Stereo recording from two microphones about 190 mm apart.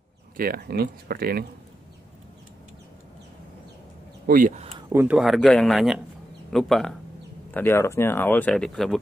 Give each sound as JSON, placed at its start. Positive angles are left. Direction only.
{"t": 0.4, "sound": "speech", "side_deg": -55}
{"t": 4.3, "sound": "speech", "side_deg": -45}
{"t": 4.7, "sound": "speech", "side_deg": -15}
{"t": 7.5, "sound": "speech", "side_deg": 10}